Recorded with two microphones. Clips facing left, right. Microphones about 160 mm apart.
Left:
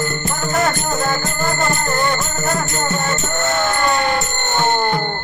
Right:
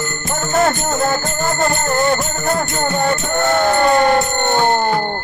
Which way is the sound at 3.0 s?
50° right (ahead or behind).